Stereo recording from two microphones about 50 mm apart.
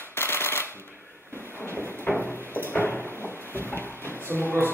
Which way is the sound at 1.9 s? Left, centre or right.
Left.